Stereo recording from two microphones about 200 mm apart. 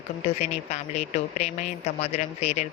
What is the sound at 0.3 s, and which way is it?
Speech, 30° left (ahead or behind).